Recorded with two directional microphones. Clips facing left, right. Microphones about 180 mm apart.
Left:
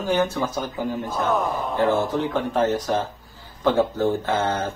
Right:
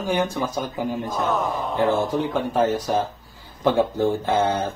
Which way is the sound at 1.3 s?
Centre (ahead or behind).